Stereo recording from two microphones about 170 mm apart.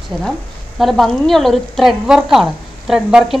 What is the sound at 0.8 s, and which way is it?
A woman's voice, centre (ahead or behind).